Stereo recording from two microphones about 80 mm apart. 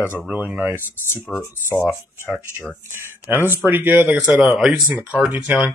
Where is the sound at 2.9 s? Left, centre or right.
Right.